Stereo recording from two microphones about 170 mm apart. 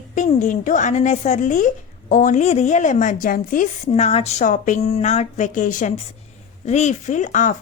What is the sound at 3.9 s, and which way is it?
A woman's voice, 35° left (ahead or behind).